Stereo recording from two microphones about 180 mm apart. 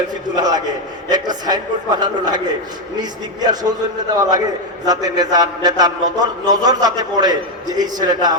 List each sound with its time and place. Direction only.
0.3 s a man's voice: 20° right (ahead or behind)